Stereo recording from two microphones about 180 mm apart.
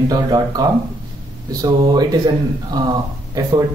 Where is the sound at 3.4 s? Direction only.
20° right (ahead or behind).